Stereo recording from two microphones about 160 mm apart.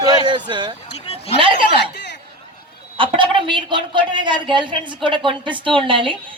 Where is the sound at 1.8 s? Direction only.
90° left.